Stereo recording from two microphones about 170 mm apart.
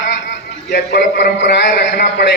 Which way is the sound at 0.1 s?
80° left.